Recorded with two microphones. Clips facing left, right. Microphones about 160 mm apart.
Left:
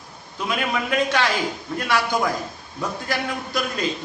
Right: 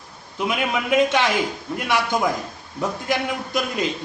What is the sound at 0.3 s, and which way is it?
Speech, 20° right (ahead or behind).